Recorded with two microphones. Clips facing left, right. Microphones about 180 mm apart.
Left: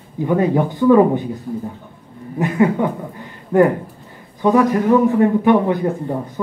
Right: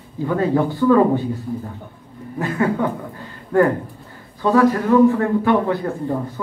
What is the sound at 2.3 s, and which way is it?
A man's voice, 20° left (ahead or behind).